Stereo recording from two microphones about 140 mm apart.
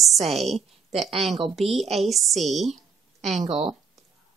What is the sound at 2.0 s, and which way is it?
Speech, centre (ahead or behind).